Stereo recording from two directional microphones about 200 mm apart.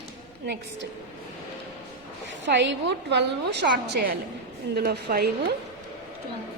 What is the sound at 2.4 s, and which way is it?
A woman's voice, 60° right (ahead or behind).